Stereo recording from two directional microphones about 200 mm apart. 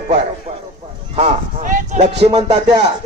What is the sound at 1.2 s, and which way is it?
Speech, 40° right (ahead or behind).